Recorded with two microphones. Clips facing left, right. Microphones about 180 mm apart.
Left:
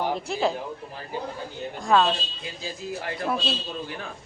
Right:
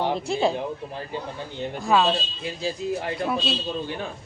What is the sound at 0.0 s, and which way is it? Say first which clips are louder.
Speech: right 2 dB; 20° right (ahead or behind).